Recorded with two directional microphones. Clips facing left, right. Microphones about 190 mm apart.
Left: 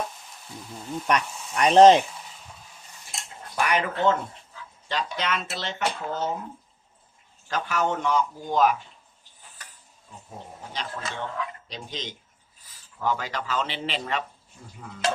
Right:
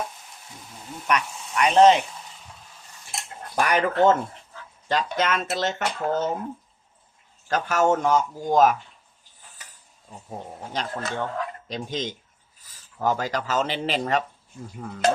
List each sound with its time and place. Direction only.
1.0 s speech: 35° left (ahead or behind)
3.5 s speech: 45° right (ahead or behind)
7.5 s speech: 45° right (ahead or behind)
10.7 s speech: 45° right (ahead or behind)